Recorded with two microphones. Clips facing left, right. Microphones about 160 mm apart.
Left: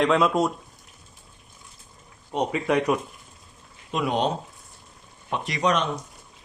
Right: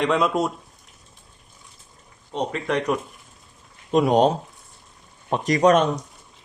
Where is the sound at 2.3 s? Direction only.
10° left (ahead or behind).